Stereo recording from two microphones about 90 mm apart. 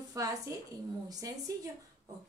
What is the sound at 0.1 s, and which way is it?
A woman's voice, 40° right (ahead or behind).